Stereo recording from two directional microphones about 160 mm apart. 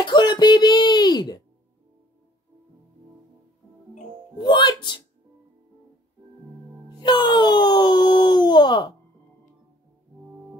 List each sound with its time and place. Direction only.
0.0 s a sound: 30° left (ahead or behind)
4.4 s speech: 30° left (ahead or behind)
7.0 s speech: 30° left (ahead or behind)